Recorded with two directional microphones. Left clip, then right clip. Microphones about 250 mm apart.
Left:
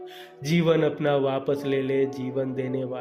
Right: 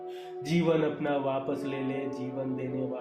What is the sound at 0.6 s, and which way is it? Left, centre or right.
Speech, left.